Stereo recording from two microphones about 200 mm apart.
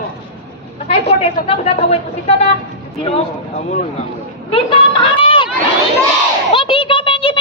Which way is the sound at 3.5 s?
35° left (ahead or behind).